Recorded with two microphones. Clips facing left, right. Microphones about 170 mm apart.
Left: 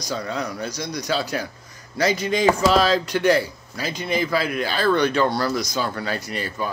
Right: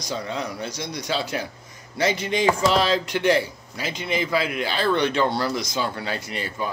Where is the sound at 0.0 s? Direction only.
25° right (ahead or behind).